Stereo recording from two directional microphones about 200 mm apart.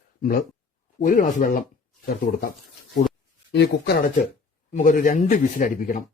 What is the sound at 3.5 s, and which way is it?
Speech, 55° left (ahead or behind).